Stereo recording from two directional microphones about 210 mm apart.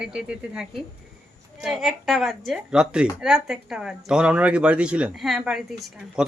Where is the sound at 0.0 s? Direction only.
5° right (ahead or behind).